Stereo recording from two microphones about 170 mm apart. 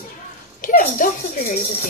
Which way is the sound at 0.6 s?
50° left (ahead or behind).